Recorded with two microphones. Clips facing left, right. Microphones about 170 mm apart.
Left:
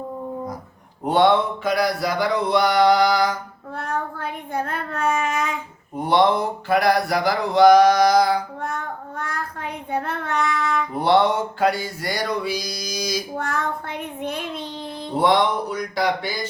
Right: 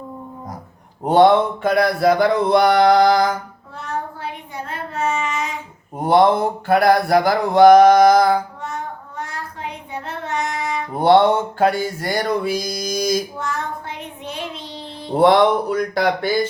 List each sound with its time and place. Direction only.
1.0 s mantra: 45° right (ahead or behind)
3.8 s child singing: 55° left (ahead or behind)
6.0 s mantra: 50° right (ahead or behind)
8.6 s child singing: 55° left (ahead or behind)
11.0 s mantra: 50° right (ahead or behind)
13.3 s child singing: 60° left (ahead or behind)
15.2 s speech: 60° right (ahead or behind)